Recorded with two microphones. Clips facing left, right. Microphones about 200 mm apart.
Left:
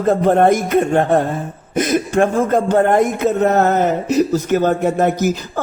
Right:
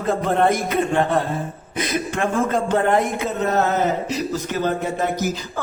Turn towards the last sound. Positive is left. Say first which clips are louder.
# left 7 dB
turn(degrees=50)  # may be behind; listen again after turning